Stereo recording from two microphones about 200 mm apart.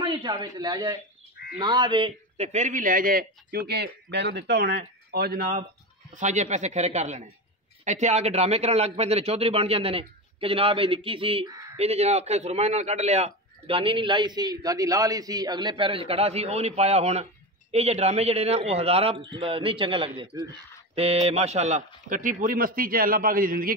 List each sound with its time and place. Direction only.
0.0 s a man's voice: 20° right (ahead or behind); by 5.6 s 50° right (ahead or behind)
6.1 s a man's voice: 35° right (ahead or behind); by 20.5 s 15° right (ahead or behind)
20.9 s a man's voice: 30° right (ahead or behind)